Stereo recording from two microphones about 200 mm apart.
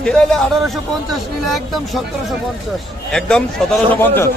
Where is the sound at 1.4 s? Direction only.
Centre (ahead or behind).